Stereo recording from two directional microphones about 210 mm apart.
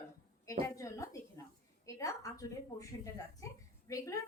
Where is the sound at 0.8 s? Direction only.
15° left (ahead or behind).